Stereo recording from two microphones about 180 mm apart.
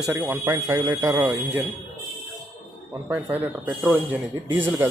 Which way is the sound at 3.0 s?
10° right (ahead or behind).